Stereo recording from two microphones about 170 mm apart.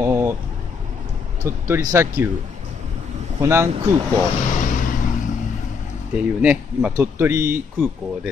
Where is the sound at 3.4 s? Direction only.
15° right (ahead or behind).